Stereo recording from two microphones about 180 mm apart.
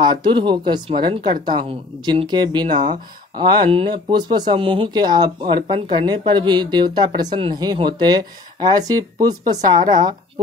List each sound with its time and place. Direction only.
0.0 s speech: 25° right (ahead or behind)